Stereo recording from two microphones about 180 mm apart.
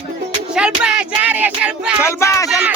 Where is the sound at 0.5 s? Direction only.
5° right (ahead or behind).